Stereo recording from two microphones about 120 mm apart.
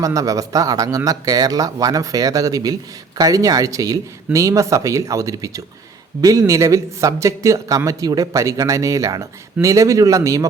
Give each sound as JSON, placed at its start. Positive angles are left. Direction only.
{"t": 0.0, "sound": "speech", "side_deg": -30}